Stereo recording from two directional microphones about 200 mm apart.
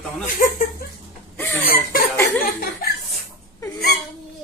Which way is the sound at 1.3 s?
10° left (ahead or behind).